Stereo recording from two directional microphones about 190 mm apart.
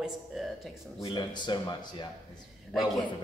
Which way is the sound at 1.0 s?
25° left (ahead or behind).